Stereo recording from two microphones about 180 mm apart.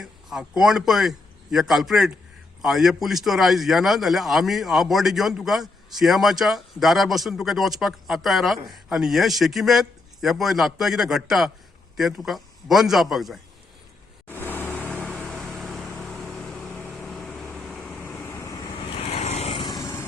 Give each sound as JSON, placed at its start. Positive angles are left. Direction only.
{"t": 0.0, "sound": "a man's voice", "side_deg": 0}
{"t": 14.3, "sound": "vehicle", "side_deg": 10}
{"t": 18.9, "sound": "vehicle", "side_deg": 35}
{"t": 19.6, "sound": "vehicle", "side_deg": 20}